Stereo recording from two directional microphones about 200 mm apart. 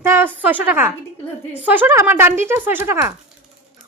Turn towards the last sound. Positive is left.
turn(degrees=-10)  # may be behind; listen again after turning